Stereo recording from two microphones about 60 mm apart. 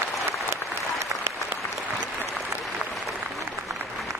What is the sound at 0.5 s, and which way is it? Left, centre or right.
Applause, right.